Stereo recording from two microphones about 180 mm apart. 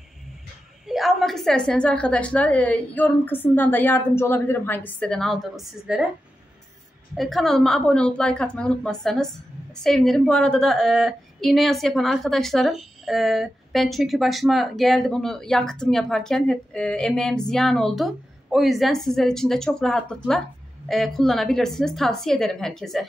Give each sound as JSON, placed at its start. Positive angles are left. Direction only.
{"t": 0.8, "sound": "a woman's voice", "side_deg": 0}
{"t": 7.2, "sound": "a woman's voice", "side_deg": 0}